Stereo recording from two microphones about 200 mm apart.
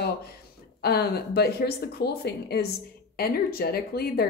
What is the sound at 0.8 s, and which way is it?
A woman's voice, 50° left (ahead or behind).